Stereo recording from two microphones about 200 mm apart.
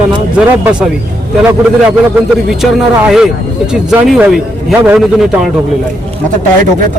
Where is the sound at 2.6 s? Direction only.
5° left (ahead or behind).